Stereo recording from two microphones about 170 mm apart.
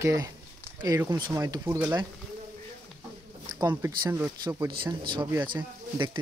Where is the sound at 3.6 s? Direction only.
20° right (ahead or behind).